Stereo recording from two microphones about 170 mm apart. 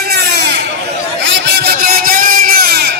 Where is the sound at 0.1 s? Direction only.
75° right (ahead or behind).